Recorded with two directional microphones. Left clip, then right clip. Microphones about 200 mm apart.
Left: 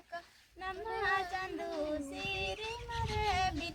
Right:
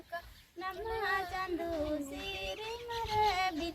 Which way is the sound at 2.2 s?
15° left (ahead or behind).